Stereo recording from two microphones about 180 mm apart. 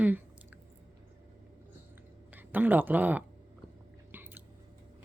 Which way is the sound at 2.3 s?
10° right (ahead or behind).